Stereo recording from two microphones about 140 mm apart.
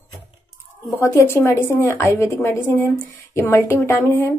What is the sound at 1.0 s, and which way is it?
A woman's voice, 20° left (ahead or behind).